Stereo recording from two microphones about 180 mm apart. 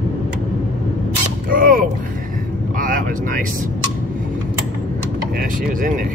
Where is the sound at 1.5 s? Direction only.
50° right (ahead or behind).